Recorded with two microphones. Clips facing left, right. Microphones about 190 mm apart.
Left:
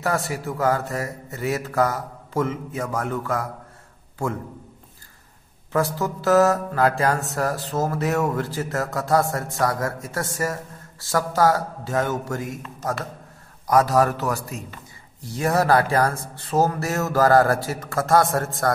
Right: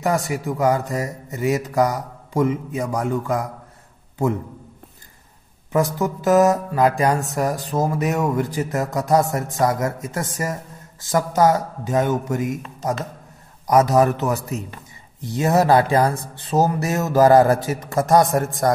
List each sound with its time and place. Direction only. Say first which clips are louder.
0.0 s music: right 3 dB; 15° right (ahead or behind)
5.7 s music: right 3 dB; 15° right (ahead or behind)
13.7 s speech: right 3 dB; 20° right (ahead or behind)